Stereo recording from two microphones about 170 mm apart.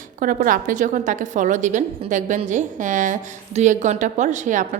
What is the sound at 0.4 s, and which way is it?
A woman's voice, 50° right (ahead or behind).